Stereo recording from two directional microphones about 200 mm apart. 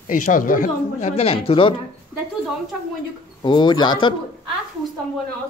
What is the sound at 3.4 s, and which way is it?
Speech, 20° left (ahead or behind).